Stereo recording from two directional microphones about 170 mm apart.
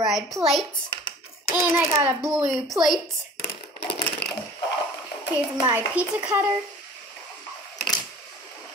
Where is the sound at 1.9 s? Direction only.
15° right (ahead or behind).